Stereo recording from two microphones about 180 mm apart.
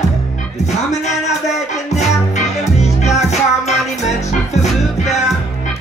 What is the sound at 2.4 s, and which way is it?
Music, 40° left (ahead or behind).